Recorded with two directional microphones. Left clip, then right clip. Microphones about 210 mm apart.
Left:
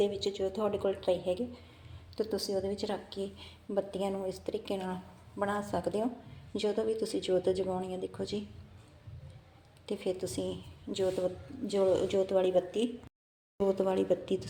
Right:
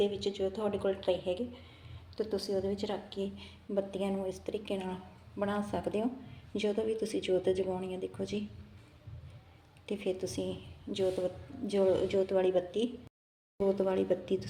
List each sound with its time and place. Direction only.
0.0 s a woman's voice: 5° left (ahead or behind)
9.9 s speech: 5° left (ahead or behind)